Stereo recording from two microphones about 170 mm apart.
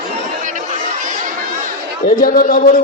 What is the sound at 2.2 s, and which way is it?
Speech, 50° left (ahead or behind).